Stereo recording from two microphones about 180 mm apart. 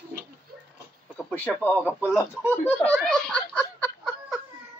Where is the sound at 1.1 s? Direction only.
10° left (ahead or behind).